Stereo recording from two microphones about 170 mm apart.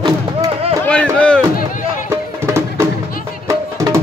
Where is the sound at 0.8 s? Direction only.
5° left (ahead or behind).